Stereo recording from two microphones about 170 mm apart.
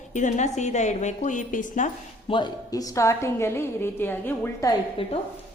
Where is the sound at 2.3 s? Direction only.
25° left (ahead or behind).